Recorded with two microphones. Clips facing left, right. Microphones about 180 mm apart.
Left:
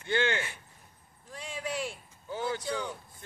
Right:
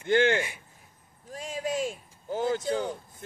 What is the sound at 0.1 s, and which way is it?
Speech, 50° right (ahead or behind).